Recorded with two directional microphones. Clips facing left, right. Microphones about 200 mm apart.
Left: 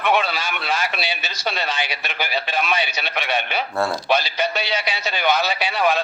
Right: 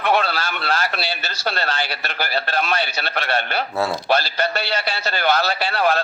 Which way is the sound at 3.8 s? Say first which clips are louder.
Even; 5° right (ahead or behind).